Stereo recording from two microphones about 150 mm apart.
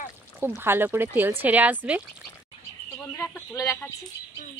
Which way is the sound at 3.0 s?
10° left (ahead or behind).